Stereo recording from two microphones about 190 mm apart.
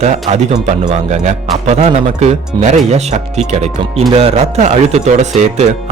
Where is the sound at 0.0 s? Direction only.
35° right (ahead or behind).